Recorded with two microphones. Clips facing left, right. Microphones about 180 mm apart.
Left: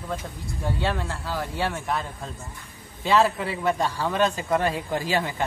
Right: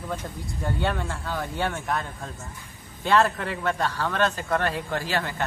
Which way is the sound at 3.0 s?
5° left (ahead or behind).